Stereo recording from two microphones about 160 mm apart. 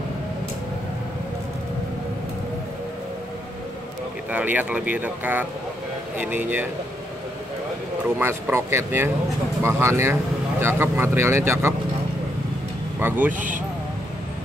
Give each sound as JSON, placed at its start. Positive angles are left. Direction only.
{"t": 4.3, "sound": "speech", "side_deg": -10}
{"t": 8.2, "sound": "speech", "side_deg": -15}
{"t": 13.0, "sound": "speech", "side_deg": -10}